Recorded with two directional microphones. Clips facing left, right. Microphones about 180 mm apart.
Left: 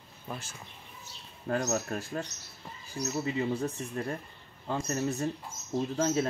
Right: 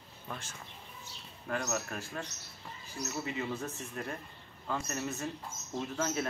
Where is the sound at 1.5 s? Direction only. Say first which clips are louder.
Left 5 dB; 35° left (ahead or behind).